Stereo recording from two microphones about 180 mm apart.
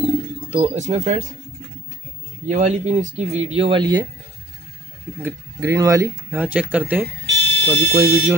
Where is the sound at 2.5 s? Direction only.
40° right (ahead or behind); by 4.0 s 25° right (ahead or behind).